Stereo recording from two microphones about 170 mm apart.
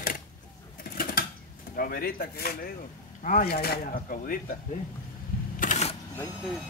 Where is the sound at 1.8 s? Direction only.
55° left (ahead or behind).